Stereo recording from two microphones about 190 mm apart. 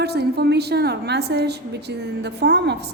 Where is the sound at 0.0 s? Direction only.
60° right (ahead or behind).